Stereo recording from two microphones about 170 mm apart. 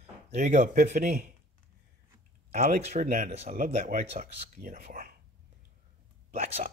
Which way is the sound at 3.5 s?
55° right (ahead or behind).